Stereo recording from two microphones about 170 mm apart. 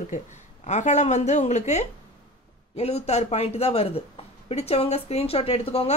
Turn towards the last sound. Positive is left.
turn(degrees=35)  # may be behind; listen again after turning